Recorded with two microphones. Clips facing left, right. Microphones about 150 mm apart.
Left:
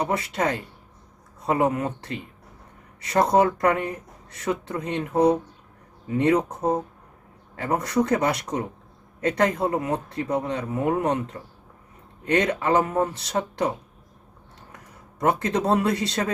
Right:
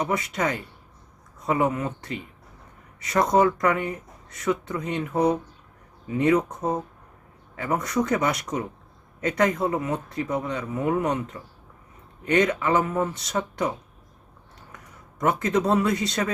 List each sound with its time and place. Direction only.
0.0 s speech: 30° left (ahead or behind)
12.3 s speech: 30° left (ahead or behind)
15.2 s speech: 30° left (ahead or behind)